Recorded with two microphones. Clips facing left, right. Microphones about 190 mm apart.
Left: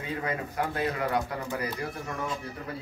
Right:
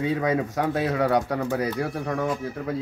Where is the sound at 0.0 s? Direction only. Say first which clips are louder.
Right 9 dB; 90° right.